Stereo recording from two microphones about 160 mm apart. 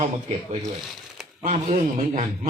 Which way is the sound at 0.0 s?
40° right (ahead or behind).